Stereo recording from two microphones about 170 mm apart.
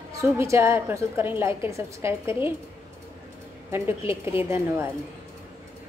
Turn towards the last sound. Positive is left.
turn(degrees=-15)  # may be behind; listen again after turning